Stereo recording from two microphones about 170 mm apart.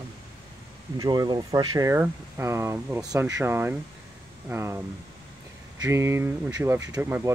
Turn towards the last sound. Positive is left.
turn(degrees=-10)  # may be behind; listen again after turning